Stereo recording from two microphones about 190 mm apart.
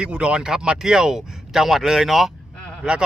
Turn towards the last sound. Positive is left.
turn(degrees=-5)  # may be behind; listen again after turning